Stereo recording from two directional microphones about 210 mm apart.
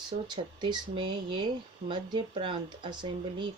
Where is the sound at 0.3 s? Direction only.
20° right (ahead or behind).